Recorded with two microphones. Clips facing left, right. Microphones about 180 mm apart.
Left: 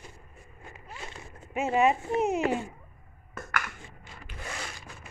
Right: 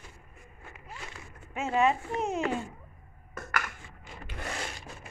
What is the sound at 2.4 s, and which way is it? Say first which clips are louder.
Speech: left 3 dB; 20° left (ahead or behind).